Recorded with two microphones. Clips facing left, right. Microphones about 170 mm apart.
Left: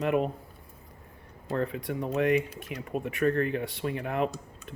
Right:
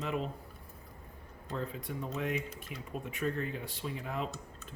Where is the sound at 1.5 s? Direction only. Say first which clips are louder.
Left 8 dB; 70° left (ahead or behind).